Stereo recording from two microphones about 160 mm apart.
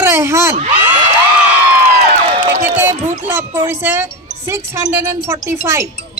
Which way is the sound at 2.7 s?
15° right (ahead or behind).